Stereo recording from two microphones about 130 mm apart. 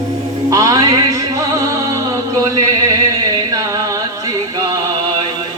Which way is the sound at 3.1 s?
30° right (ahead or behind).